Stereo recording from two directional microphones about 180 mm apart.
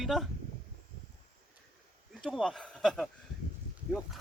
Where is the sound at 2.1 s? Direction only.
Centre (ahead or behind).